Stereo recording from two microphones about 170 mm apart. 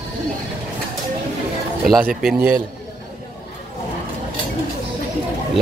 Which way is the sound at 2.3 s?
55° right (ahead or behind).